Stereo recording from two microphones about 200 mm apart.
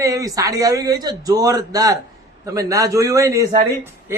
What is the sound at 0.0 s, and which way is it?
A man's voice, 15° right (ahead or behind).